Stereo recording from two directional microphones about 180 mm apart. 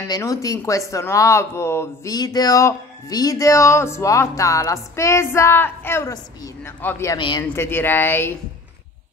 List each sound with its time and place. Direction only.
0.1 s speech: 20° left (ahead or behind)
7.2 s speech: 25° left (ahead or behind)
7.4 s speech: 10° left (ahead or behind)